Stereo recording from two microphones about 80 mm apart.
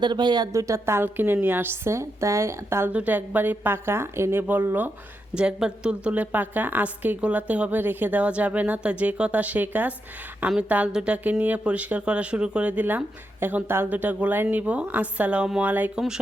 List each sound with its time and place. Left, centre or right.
0.0 s speech: right
0.5 s a woman's voice: right
2.9 s a woman's voice: centre
5.3 s a woman's voice: centre